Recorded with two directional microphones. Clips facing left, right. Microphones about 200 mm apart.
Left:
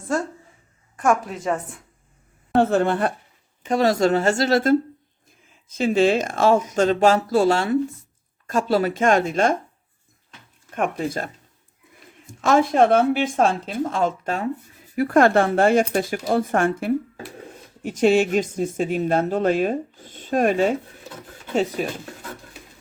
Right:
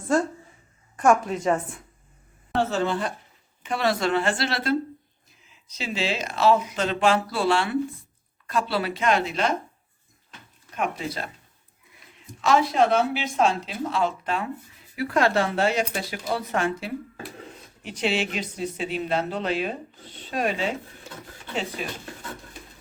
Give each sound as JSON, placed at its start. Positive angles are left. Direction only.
{"t": 0.1, "sound": "a woman's voice", "side_deg": 0}
{"t": 2.6, "sound": "a woman's voice", "side_deg": 55}
{"t": 3.6, "sound": "speech", "side_deg": 40}
{"t": 10.8, "sound": "speech", "side_deg": 50}